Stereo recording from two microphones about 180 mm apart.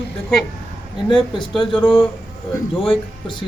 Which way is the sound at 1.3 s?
30° left (ahead or behind).